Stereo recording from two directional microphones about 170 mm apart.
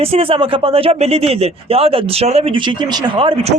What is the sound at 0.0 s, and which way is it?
A man's voice, 35° right (ahead or behind).